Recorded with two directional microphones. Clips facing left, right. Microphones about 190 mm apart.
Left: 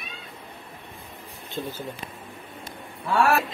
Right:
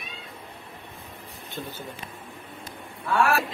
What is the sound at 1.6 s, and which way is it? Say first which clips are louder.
Speech: left 4 dB; 25° left (ahead or behind).